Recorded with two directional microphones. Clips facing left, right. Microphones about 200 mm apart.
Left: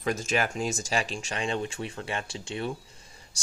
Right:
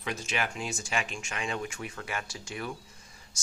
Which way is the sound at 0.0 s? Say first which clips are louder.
Left 6 dB; 45° left (ahead or behind).